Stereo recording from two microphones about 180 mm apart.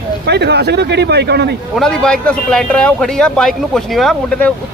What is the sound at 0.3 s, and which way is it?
Speech, 65° right (ahead or behind).